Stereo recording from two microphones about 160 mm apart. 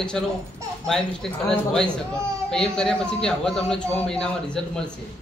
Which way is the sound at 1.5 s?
5° left (ahead or behind).